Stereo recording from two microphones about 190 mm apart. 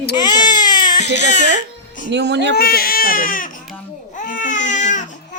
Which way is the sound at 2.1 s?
65° right (ahead or behind).